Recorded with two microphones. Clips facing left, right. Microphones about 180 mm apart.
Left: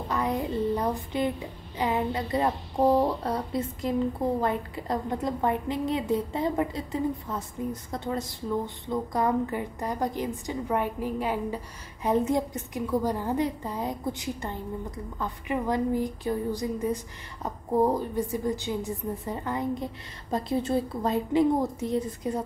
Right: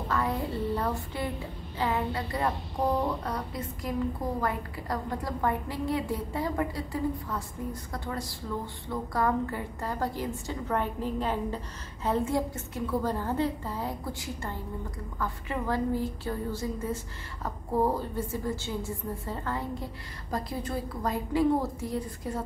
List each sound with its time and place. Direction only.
0.1 s a child's voice: 20° left (ahead or behind)